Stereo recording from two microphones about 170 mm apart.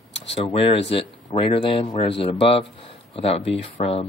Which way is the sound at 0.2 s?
35° left (ahead or behind).